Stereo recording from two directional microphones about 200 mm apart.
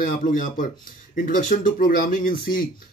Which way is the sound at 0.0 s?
45° left (ahead or behind).